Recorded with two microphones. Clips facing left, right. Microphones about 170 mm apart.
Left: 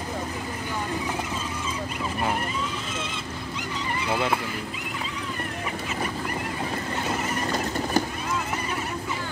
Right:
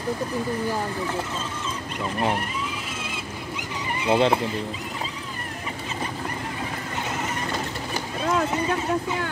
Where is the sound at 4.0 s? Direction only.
25° right (ahead or behind).